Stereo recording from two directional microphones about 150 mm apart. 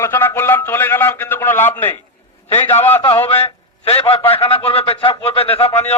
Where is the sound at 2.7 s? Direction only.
45° left (ahead or behind).